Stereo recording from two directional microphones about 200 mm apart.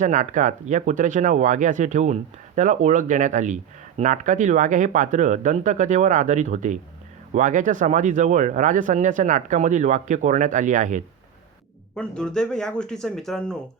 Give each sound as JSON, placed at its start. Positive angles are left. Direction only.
{"t": 0.0, "sound": "speech", "side_deg": -40}
{"t": 11.9, "sound": "speech", "side_deg": 5}